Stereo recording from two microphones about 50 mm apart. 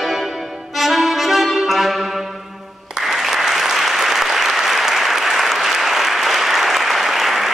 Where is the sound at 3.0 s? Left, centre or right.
Centre.